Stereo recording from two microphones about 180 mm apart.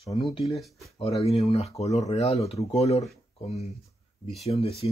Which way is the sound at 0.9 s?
35° left (ahead or behind).